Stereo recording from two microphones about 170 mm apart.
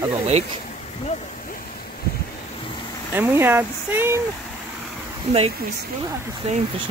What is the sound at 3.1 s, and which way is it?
Speech, 15° right (ahead or behind).